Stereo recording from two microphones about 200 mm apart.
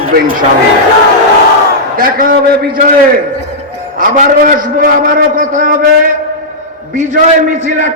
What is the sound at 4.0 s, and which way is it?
A man's voice, 45° right (ahead or behind).